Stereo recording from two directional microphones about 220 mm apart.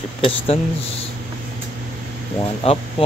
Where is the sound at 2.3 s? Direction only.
25° left (ahead or behind).